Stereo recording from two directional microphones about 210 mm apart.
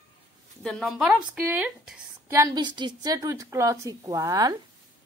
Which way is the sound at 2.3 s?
20° right (ahead or behind).